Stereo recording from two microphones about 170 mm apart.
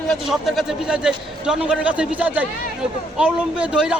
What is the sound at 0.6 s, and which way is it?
A man's voice, 5° right (ahead or behind).